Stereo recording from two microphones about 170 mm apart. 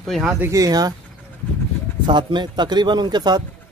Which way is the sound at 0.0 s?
Centre (ahead or behind).